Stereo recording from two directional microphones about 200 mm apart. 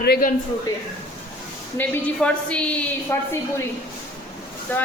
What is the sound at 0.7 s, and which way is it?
Speech, 15° left (ahead or behind).